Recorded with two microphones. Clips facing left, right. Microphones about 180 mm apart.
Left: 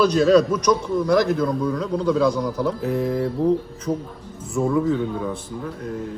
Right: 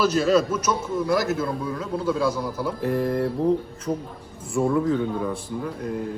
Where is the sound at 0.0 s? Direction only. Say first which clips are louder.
Left 4 dB; 5° right (ahead or behind).